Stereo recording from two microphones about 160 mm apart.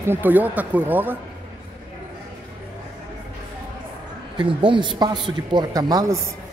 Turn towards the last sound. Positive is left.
turn(degrees=-25)  # may be behind; listen again after turning